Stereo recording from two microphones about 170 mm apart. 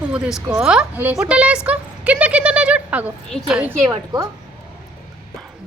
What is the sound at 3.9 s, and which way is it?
Speech, 25° right (ahead or behind).